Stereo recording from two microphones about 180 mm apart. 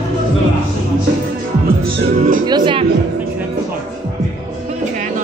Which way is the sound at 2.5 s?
25° right (ahead or behind).